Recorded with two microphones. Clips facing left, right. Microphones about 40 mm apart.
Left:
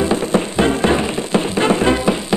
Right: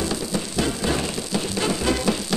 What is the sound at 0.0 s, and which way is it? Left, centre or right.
Music, left.